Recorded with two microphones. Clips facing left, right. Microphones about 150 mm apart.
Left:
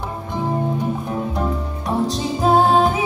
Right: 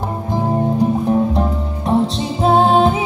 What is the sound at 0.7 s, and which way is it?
Music, 30° right (ahead or behind).